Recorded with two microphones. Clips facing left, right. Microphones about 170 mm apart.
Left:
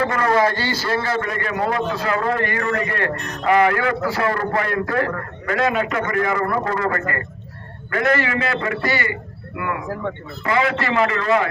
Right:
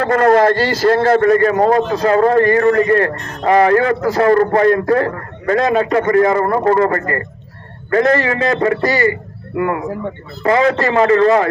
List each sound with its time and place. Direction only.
0.1 s a man's voice: 50° right (ahead or behind)
10.4 s a man's voice: 40° right (ahead or behind)